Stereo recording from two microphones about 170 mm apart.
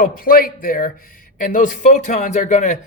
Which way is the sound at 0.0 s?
60° left (ahead or behind).